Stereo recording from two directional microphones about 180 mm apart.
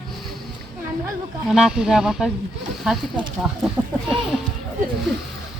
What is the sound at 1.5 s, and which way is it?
Speech, 5° right (ahead or behind).